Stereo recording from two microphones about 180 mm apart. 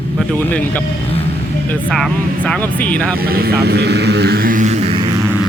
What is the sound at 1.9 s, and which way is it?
Speech, 5° left (ahead or behind).